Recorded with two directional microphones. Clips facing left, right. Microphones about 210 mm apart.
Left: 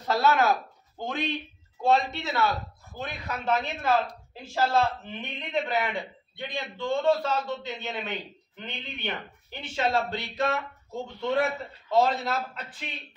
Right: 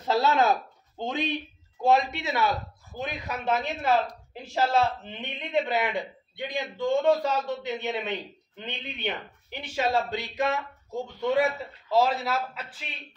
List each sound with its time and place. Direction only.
0.0 s a man's voice: 25° right (ahead or behind); by 12.7 s 5° right (ahead or behind)